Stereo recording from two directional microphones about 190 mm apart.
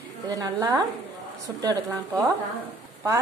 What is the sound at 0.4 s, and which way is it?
A woman's voice, 20° right (ahead or behind).